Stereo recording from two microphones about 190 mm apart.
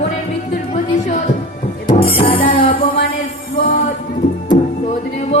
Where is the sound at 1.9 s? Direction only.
30° left (ahead or behind).